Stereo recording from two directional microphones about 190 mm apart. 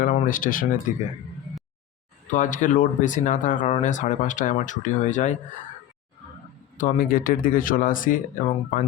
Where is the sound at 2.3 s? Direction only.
40° left (ahead or behind).